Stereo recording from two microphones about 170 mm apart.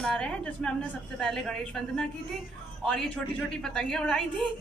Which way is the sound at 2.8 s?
5° left (ahead or behind).